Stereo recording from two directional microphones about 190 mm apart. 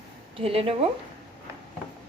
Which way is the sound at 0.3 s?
30° right (ahead or behind).